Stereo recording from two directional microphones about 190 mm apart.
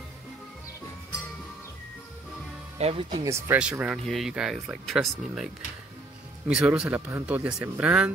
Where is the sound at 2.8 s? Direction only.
30° right (ahead or behind).